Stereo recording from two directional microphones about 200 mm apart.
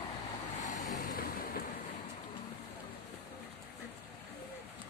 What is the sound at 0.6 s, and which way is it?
Vehicle, 40° left (ahead or behind).